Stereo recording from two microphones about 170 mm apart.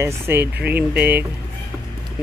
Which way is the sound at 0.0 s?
15° right (ahead or behind).